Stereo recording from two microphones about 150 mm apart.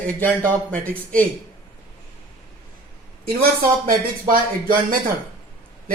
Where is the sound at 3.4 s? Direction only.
70° right (ahead or behind).